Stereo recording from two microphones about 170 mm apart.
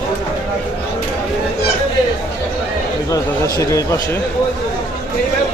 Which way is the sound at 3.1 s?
20° left (ahead or behind).